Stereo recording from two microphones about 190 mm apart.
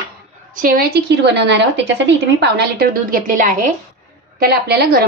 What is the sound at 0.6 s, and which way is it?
A woman's voice, 55° right (ahead or behind).